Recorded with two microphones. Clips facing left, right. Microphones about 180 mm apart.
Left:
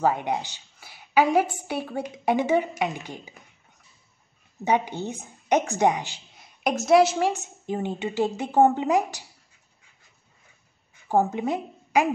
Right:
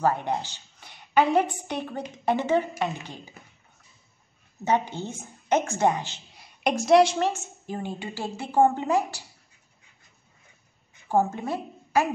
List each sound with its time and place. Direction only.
0.0 s a woman's voice: 15° left (ahead or behind)
4.6 s a woman's voice: 15° left (ahead or behind)
6.3 s a woman's voice: centre (ahead or behind)
11.1 s a woman's voice: 15° left (ahead or behind)